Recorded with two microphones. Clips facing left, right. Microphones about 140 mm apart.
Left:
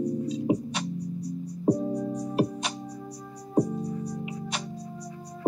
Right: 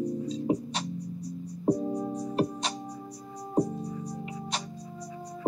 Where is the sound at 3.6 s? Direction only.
70° left (ahead or behind).